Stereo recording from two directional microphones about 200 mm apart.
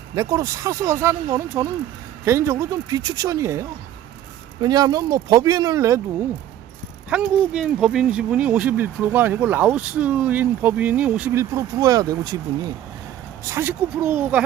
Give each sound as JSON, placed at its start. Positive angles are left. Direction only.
{"t": 0.2, "sound": "speech", "side_deg": -15}
{"t": 7.1, "sound": "speech", "side_deg": -5}